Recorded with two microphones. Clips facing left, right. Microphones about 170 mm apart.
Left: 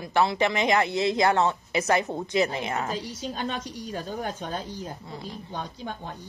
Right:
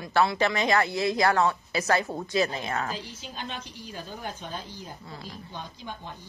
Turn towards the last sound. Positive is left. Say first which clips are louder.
# left 4 dB
turn(degrees=45)  # may be behind; listen again after turning